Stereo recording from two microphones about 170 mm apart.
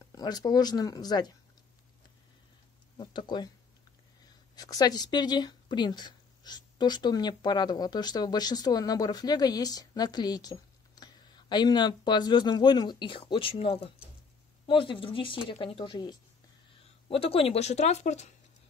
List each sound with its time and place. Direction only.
0.1 s speech: 25° left (ahead or behind)
3.0 s speech: 25° left (ahead or behind)
4.6 s speech: 20° left (ahead or behind); by 18.3 s 40° left (ahead or behind)